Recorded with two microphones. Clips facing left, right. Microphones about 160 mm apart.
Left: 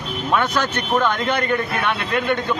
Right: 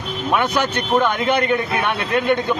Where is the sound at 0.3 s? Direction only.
15° right (ahead or behind).